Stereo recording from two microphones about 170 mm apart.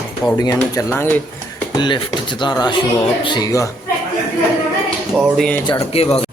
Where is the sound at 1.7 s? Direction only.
25° left (ahead or behind).